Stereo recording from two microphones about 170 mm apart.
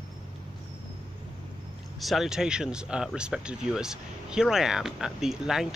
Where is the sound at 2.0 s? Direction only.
Centre (ahead or behind).